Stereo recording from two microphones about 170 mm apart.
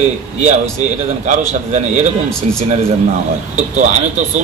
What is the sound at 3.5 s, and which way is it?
Speech, 45° right (ahead or behind).